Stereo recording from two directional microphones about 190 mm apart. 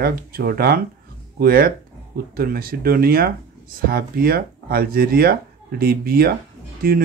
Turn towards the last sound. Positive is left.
turn(degrees=-50)  # may be behind; listen again after turning